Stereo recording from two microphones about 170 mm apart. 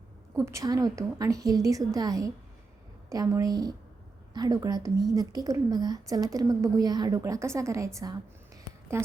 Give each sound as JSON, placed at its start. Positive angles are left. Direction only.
{"t": 0.3, "sound": "a woman's voice", "side_deg": -20}